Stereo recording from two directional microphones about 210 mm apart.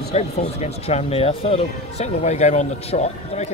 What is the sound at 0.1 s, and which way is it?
Speech, 30° left (ahead or behind).